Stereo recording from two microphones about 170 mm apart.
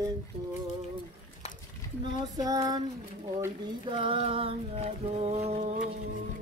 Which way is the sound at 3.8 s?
30° right (ahead or behind).